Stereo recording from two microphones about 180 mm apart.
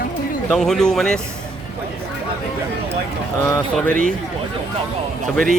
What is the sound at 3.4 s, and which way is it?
Speech, 15° left (ahead or behind).